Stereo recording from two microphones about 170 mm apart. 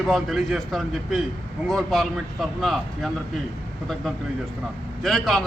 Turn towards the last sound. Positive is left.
turn(degrees=0)  # may be behind; listen again after turning